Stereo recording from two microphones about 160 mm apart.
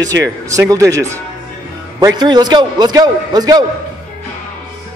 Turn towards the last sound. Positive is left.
turn(degrees=-25)  # may be behind; listen again after turning